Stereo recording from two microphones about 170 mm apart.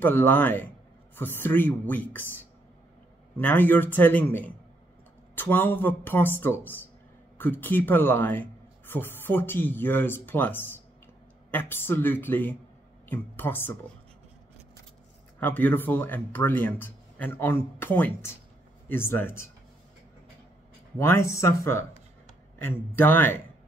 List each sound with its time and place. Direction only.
0.0 s speech: 10° left (ahead or behind)
15.4 s speech: 10° left (ahead or behind)
21.0 s speech: 15° left (ahead or behind)